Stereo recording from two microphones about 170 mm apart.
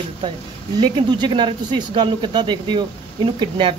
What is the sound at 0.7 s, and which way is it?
Speech, 30° right (ahead or behind).